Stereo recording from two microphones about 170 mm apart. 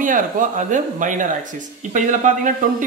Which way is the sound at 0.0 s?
50° right (ahead or behind).